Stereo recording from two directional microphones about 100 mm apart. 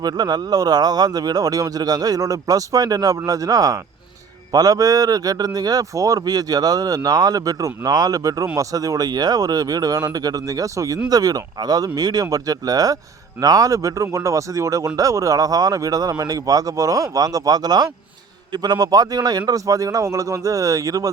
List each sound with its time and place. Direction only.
0.0 s speech: 40° right (ahead or behind)